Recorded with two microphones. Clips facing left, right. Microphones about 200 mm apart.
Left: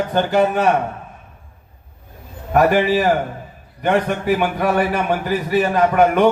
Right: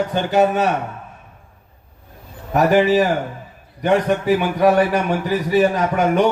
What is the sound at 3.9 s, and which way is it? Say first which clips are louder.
A man's voice: right 1 dB; 50° left (ahead or behind).